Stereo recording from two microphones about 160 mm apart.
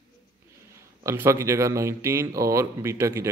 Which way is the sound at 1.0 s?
15° right (ahead or behind).